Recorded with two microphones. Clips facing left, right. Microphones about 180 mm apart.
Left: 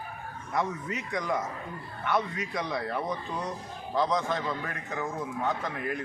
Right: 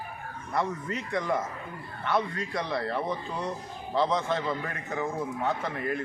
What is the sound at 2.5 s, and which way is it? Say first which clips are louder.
A man's voice: right 2 dB; centre (ahead or behind).